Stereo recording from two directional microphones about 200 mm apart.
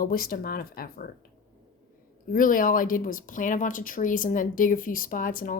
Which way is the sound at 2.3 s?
45° left (ahead or behind).